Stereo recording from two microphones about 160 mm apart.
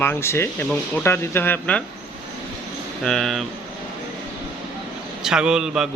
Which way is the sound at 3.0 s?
Centre (ahead or behind).